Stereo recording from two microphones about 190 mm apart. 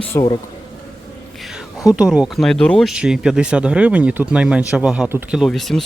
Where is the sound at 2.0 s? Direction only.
5° right (ahead or behind).